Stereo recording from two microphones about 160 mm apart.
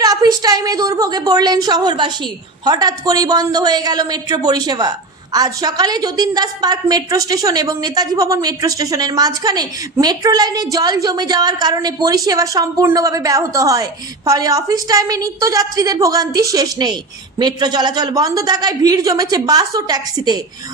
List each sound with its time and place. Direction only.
0.0 s a woman's voice: 25° right (ahead or behind)